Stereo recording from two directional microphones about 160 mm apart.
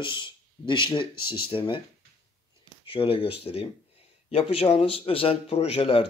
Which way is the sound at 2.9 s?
35° left (ahead or behind).